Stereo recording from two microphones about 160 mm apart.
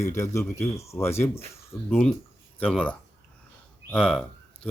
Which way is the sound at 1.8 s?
5° left (ahead or behind).